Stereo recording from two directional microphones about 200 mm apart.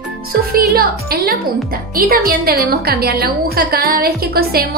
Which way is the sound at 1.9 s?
50° right (ahead or behind).